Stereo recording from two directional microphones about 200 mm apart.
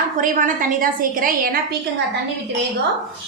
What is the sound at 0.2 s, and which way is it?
A woman's voice, 40° right (ahead or behind).